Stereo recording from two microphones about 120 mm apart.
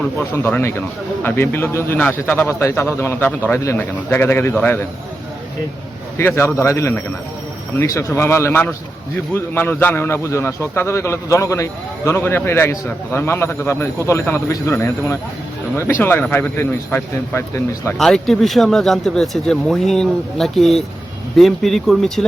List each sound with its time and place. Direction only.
0.0 s a man's voice: 15° left (ahead or behind)
6.1 s a man's voice: 20° left (ahead or behind)
17.9 s a man's voice: 5° left (ahead or behind)